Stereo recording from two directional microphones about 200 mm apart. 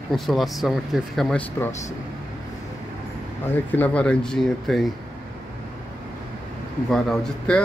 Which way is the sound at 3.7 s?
5° left (ahead or behind).